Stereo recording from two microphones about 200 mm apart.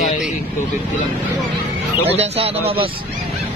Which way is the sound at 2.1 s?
30° right (ahead or behind).